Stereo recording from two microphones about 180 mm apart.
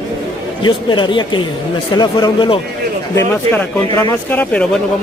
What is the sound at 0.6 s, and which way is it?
Speech, 25° left (ahead or behind).